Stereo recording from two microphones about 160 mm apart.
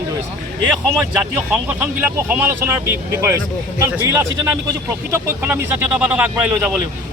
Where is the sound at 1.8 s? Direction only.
10° right (ahead or behind).